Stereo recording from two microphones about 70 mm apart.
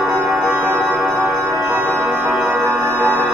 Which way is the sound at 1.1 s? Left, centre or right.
Centre.